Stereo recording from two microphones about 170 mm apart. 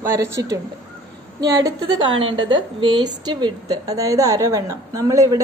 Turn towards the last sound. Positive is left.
turn(degrees=-20)  # may be behind; listen again after turning